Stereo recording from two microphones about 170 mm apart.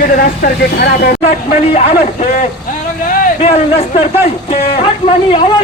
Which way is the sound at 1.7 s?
40° left (ahead or behind).